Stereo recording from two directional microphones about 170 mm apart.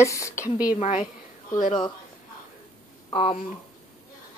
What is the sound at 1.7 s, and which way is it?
Speech, 25° left (ahead or behind).